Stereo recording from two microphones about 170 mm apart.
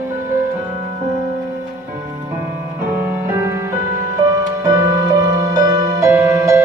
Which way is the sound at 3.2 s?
15° right (ahead or behind).